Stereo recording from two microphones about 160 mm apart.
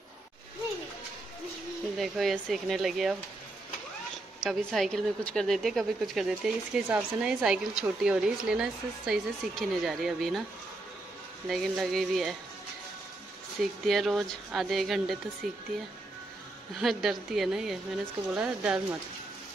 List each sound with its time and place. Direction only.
2.0 s a woman's voice: centre (ahead or behind)
4.4 s a woman's voice: centre (ahead or behind)
11.4 s a woman's voice: centre (ahead or behind)
13.6 s a woman's voice: centre (ahead or behind)
16.8 s a woman's voice: centre (ahead or behind)